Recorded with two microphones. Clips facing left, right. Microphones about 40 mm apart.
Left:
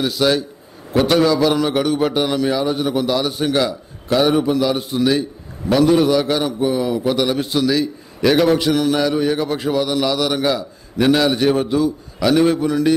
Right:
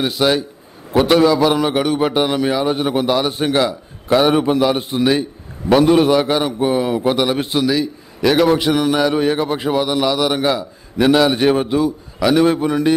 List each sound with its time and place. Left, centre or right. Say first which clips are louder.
0.0 s a man's voice: right 1 dB; right
4.3 s a man's voice: right 2 dB; right
7.6 s a man's voice: even; centre
8.5 s a man's voice: right 1 dB; centre
9.1 s a man's voice: right 1 dB; right; by 11.3 s centre
11.3 s a man's voice: right 1 dB; right
12.2 s a man's voice: right 1 dB; centre
12.5 s a man's voice: right 1 dB; right